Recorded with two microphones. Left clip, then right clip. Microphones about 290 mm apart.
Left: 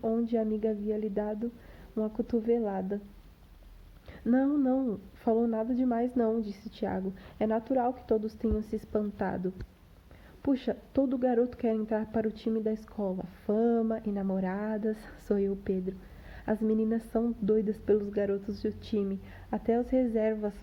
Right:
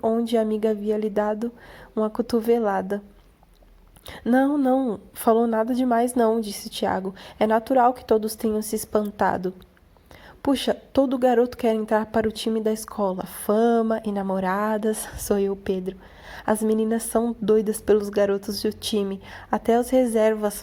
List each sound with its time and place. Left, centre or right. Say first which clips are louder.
0.0 s a woman's voice: right 8 dB; centre
4.1 s a woman's voice: right 7 dB; centre